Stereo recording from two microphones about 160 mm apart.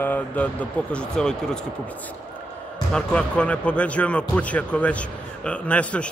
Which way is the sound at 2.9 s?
5° left (ahead or behind).